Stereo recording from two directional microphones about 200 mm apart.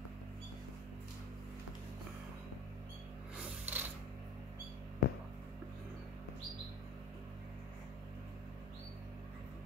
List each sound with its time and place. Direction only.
3.3 s mechanisms: 10° right (ahead or behind)
5.0 s music: 50° left (ahead or behind)